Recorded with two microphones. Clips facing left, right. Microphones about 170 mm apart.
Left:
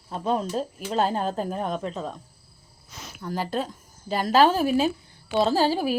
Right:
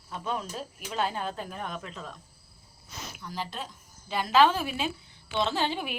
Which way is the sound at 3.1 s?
45° left (ahead or behind).